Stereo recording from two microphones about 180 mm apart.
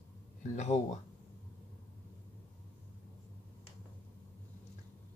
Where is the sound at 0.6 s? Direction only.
40° left (ahead or behind).